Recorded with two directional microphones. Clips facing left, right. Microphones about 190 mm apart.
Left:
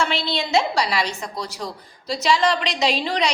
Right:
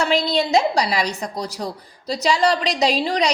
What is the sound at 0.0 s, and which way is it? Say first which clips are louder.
A woman's voice: right 5 dB; 40° right (ahead or behind).